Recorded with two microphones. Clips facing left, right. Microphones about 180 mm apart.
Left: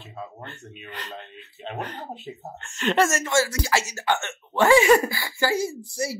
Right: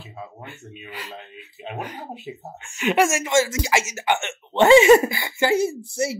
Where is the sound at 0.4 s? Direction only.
5° right (ahead or behind).